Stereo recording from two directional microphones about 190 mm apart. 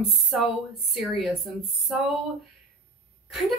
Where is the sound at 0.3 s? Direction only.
5° right (ahead or behind).